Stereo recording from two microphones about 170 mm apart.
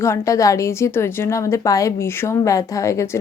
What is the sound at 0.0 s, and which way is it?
A woman's voice, 15° left (ahead or behind).